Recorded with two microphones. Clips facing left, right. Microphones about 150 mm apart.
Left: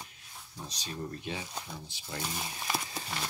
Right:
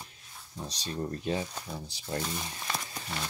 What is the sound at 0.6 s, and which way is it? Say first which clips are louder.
Speech: right 5 dB; 35° right (ahead or behind).